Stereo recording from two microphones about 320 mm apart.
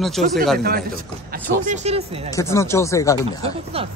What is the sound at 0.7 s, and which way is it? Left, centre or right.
A man's voice, right.